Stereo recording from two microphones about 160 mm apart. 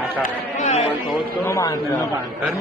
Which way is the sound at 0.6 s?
45° left (ahead or behind).